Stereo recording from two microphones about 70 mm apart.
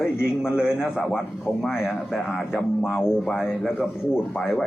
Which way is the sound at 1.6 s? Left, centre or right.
Centre.